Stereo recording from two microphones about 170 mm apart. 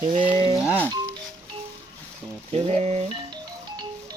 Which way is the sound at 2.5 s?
35° right (ahead or behind).